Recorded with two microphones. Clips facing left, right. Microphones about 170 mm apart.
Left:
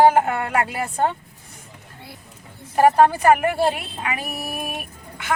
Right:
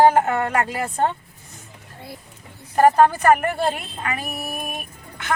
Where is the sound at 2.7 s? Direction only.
10° left (ahead or behind).